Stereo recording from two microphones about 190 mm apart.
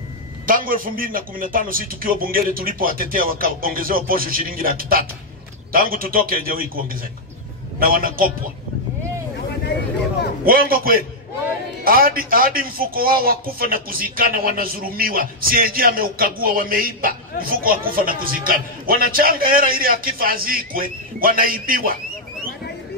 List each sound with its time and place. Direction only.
0.5 s a man's voice: 45° right (ahead or behind)
10.4 s a man's voice: 50° right (ahead or behind)